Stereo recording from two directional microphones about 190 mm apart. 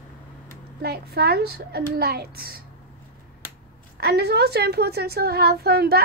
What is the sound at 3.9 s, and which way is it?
A woman's voice, 55° right (ahead or behind).